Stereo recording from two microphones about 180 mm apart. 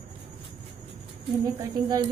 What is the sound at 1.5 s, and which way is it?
Speech, 20° right (ahead or behind).